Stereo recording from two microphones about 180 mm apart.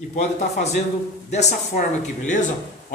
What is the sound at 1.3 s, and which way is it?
Speech, 40° left (ahead or behind).